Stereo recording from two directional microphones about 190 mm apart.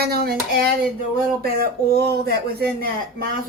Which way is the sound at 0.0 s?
55° right (ahead or behind).